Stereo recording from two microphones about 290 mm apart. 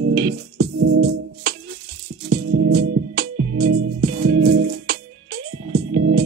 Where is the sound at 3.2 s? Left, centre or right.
Right.